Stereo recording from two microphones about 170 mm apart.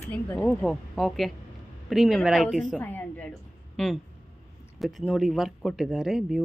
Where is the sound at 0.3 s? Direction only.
10° left (ahead or behind).